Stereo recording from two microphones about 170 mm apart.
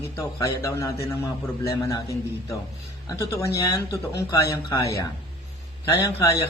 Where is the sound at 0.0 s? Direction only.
15° left (ahead or behind).